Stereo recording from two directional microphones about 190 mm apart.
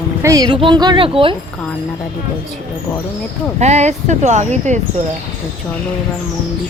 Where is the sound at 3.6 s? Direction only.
35° right (ahead or behind).